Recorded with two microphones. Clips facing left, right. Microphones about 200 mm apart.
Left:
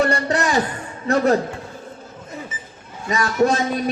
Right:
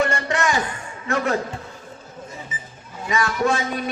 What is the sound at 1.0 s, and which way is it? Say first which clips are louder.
Speech: left 6 dB; 35° left (ahead or behind).